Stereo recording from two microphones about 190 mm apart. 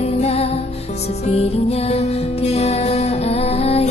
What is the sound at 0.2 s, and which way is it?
Music, 35° left (ahead or behind).